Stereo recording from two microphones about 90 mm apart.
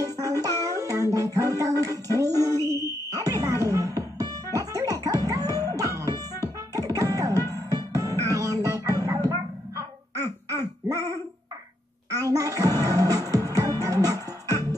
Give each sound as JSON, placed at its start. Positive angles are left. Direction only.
{"t": 0.0, "sound": "music", "side_deg": -40}
{"t": 2.6, "sound": "a sound", "side_deg": -40}
{"t": 3.2, "sound": "music", "side_deg": -35}
{"t": 10.1, "sound": "baby laughter", "side_deg": -40}
{"t": 12.1, "sound": "music", "side_deg": -40}